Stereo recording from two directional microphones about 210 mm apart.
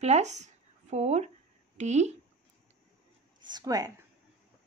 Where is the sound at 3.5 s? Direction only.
15° right (ahead or behind).